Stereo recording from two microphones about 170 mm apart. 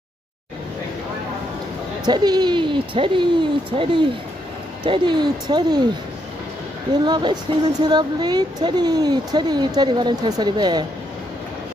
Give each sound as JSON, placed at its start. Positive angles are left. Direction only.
{"t": 2.0, "sound": "speech", "side_deg": -25}
{"t": 7.1, "sound": "speech", "side_deg": -25}